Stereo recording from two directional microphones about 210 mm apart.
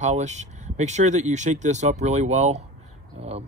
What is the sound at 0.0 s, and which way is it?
Speech, 35° right (ahead or behind).